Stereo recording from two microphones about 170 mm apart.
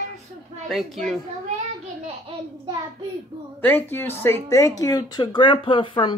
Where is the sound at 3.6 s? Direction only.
10° left (ahead or behind).